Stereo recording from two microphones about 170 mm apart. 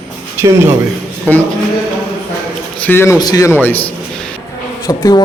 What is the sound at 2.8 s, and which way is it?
Speech, 10° left (ahead or behind).